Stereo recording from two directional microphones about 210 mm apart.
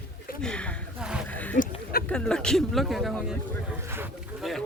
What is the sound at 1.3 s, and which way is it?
Speech, 5° left (ahead or behind).